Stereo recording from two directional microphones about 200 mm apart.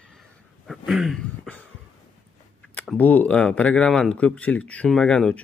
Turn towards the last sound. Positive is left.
turn(degrees=5)  # may be behind; listen again after turning